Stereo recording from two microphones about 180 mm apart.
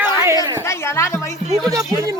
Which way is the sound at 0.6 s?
15° left (ahead or behind).